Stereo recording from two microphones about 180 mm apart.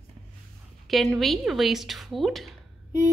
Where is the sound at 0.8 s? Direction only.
Centre (ahead or behind).